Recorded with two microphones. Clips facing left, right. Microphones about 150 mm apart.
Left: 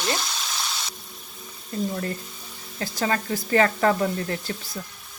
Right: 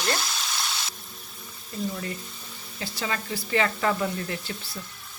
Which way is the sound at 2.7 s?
45° left (ahead or behind).